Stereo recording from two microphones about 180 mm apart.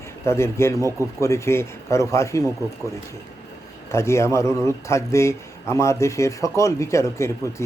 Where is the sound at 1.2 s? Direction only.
15° left (ahead or behind).